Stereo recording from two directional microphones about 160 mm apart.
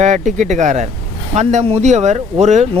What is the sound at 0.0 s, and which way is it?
Speech, 50° right (ahead or behind).